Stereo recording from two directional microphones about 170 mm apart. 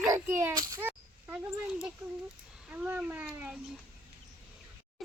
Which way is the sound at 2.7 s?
10° right (ahead or behind).